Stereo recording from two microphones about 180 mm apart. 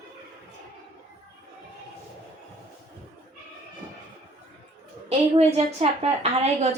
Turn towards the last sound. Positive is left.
turn(degrees=-35)  # may be behind; listen again after turning